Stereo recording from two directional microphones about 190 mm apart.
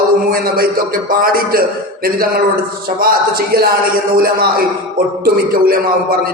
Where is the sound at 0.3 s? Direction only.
50° right (ahead or behind).